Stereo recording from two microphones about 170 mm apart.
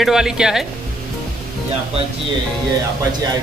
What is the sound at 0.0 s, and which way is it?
Speech, 5° right (ahead or behind).